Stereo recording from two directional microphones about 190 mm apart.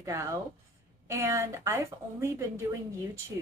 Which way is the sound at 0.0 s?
15° right (ahead or behind).